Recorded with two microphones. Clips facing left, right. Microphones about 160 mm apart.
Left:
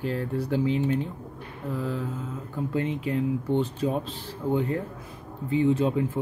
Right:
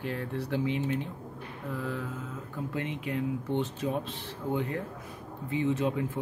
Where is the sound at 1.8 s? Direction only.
30° left (ahead or behind).